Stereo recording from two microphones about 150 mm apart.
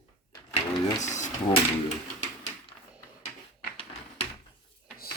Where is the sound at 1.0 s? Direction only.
55° left (ahead or behind).